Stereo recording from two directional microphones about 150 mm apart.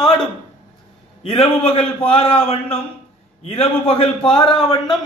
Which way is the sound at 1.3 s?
40° left (ahead or behind).